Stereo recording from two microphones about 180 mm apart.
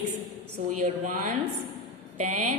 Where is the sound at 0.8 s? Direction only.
45° right (ahead or behind).